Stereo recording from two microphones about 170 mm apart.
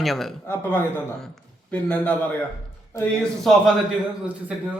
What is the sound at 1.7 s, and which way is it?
Speech, 10° left (ahead or behind).